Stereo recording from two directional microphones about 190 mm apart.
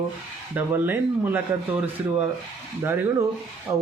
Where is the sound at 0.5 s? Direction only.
10° right (ahead or behind).